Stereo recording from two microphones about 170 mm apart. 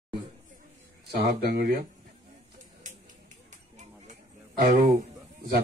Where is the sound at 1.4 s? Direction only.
60° right (ahead or behind).